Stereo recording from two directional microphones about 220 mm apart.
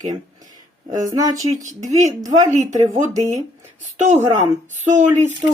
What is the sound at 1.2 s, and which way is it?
Speech, 15° right (ahead or behind).